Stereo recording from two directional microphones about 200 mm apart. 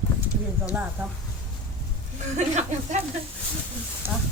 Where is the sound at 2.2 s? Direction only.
35° right (ahead or behind).